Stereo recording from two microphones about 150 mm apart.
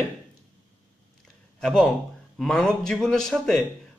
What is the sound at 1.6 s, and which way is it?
A man's voice, 5° left (ahead or behind).